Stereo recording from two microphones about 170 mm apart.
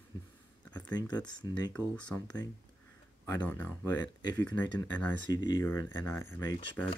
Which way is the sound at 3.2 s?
10° left (ahead or behind).